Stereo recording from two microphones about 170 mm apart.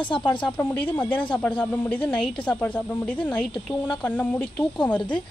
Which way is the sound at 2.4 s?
10° left (ahead or behind).